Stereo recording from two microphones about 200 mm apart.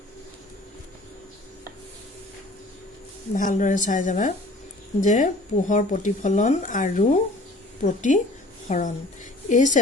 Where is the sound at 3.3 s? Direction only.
40° left (ahead or behind).